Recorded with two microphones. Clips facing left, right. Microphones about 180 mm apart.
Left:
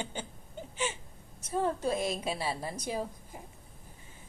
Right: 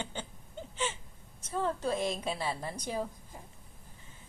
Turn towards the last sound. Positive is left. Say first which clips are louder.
# left 1 dB
turn(degrees=10)  # may be behind; listen again after turning